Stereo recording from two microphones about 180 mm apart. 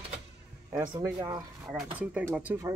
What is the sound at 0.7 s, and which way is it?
Speech, 15° right (ahead or behind).